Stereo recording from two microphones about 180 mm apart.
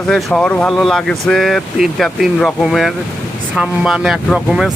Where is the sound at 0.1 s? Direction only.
Centre (ahead or behind).